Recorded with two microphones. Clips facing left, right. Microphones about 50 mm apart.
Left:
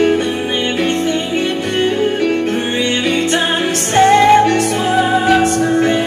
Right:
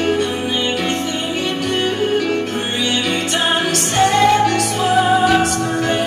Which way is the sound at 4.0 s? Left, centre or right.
Left.